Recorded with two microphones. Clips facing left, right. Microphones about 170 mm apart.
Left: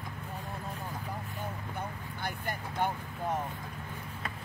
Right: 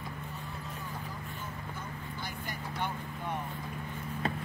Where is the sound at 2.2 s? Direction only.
50° left (ahead or behind).